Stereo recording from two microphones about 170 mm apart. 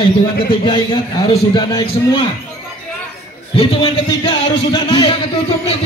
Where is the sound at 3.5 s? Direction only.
30° left (ahead or behind).